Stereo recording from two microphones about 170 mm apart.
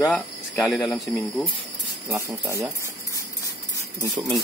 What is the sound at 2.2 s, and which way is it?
Speech, 20° right (ahead or behind).